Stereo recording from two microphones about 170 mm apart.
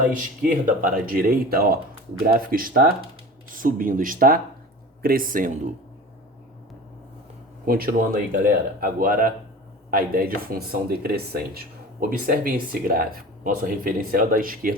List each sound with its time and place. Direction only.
0.0 s speech: 50° right (ahead or behind)
7.6 s speech: 60° right (ahead or behind)